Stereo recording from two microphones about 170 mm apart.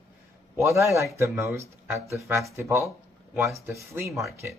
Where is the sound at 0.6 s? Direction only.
15° right (ahead or behind).